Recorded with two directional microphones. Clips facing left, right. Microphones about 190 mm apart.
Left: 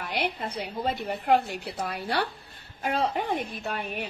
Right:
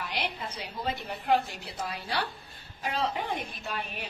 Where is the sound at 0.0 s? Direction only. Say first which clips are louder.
Left 4 dB; 60° left (ahead or behind).